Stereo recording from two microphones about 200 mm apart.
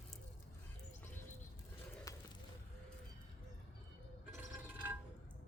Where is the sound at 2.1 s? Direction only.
15° left (ahead or behind).